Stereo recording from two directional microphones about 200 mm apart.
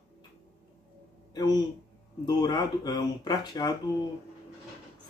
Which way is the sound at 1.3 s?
20° left (ahead or behind).